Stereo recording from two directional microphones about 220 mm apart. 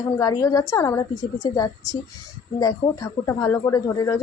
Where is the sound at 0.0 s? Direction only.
15° left (ahead or behind).